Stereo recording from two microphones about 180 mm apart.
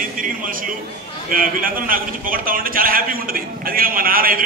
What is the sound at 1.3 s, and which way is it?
A man's voice, 50° right (ahead or behind).